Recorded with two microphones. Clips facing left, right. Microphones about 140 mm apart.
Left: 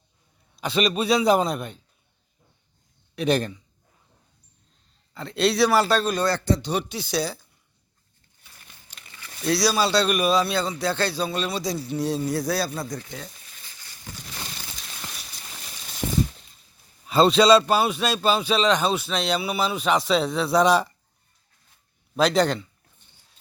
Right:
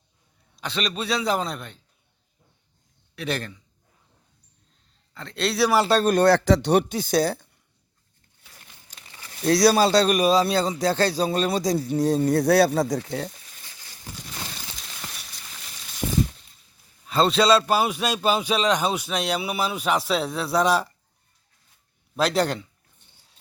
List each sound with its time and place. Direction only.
0.5 s a man's voice: 10° left (ahead or behind)
3.2 s a man's voice: 20° left (ahead or behind)
5.1 s speech: 5° left (ahead or behind)
6.0 s speech: 55° right (ahead or behind)
6.3 s speech: 90° right; by 7.4 s 50° right (ahead or behind)
9.4 s speech: 45° right (ahead or behind); by 13.1 s 90° right
17.1 s a man's voice: 5° left (ahead or behind)
22.1 s a man's voice: 5° right (ahead or behind)